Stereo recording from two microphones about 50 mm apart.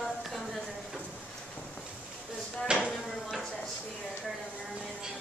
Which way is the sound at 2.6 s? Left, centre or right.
Centre.